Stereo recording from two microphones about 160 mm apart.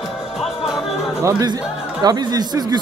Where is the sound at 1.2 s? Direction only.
20° right (ahead or behind).